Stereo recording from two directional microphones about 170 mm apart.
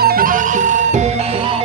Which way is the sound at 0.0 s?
60° right (ahead or behind).